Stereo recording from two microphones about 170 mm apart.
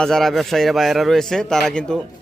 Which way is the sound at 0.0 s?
Centre (ahead or behind).